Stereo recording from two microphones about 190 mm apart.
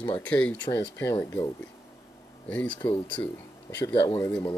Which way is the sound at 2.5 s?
5° left (ahead or behind).